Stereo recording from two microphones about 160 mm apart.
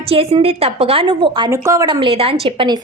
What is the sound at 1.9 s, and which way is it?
Speech, 35° right (ahead or behind).